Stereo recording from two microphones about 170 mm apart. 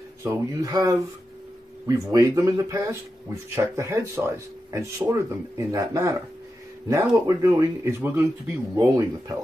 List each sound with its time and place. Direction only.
0.2 s speech: 20° right (ahead or behind)